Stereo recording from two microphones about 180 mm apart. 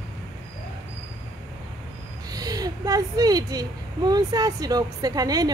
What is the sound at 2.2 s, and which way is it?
A woman's voice, 20° right (ahead or behind).